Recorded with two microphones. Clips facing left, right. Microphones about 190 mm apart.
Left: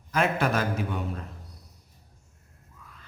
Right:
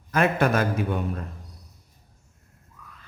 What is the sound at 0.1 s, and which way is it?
Speech, 55° right (ahead or behind).